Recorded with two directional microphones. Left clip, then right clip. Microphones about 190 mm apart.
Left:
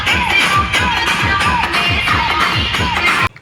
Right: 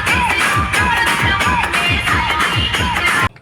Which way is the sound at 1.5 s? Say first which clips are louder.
Left 1 dB; 40° left (ahead or behind).